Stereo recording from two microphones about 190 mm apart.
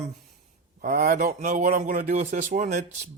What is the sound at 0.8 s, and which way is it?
Speech, 45° right (ahead or behind).